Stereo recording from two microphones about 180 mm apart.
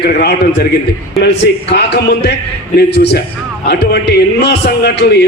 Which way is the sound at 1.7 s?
65° left (ahead or behind).